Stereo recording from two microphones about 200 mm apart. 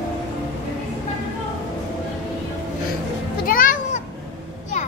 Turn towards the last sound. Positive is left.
turn(degrees=45)  # may be behind; listen again after turning